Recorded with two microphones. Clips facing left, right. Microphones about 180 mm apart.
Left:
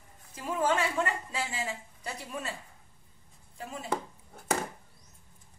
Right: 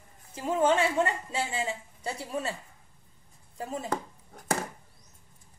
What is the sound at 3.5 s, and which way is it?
Speech, 40° right (ahead or behind).